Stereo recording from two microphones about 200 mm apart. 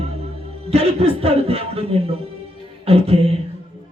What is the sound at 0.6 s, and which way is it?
A man's voice, 30° right (ahead or behind).